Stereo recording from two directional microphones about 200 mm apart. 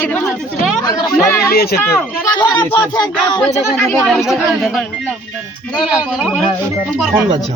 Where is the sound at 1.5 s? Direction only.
50° left (ahead or behind).